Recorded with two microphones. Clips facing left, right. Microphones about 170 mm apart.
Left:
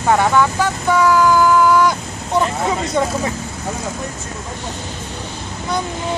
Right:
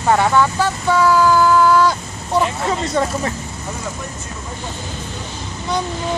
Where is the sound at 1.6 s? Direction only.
15° left (ahead or behind).